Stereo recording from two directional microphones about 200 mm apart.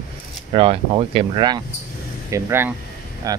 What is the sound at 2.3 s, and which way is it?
Speech, 10° right (ahead or behind).